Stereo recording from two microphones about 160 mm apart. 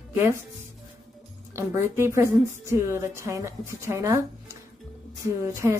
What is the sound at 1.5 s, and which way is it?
A woman's voice, 15° right (ahead or behind).